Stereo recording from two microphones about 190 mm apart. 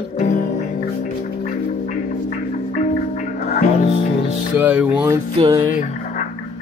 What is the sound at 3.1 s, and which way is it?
Music, 40° left (ahead or behind).